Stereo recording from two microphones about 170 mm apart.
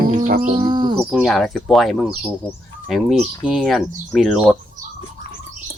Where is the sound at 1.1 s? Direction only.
Centre (ahead or behind).